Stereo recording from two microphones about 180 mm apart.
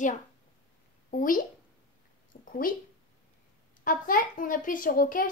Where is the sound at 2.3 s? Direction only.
50° left (ahead or behind).